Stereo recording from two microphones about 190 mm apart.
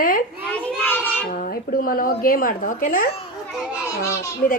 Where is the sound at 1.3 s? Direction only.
45° left (ahead or behind).